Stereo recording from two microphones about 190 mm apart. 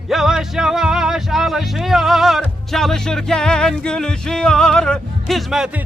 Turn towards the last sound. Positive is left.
turn(degrees=-5)  # may be behind; listen again after turning